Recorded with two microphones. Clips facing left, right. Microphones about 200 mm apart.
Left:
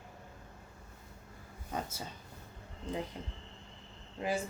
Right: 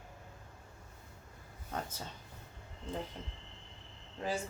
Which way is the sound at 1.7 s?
10° left (ahead or behind).